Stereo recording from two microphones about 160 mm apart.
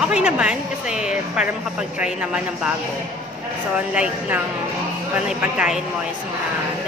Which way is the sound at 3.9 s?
5° right (ahead or behind).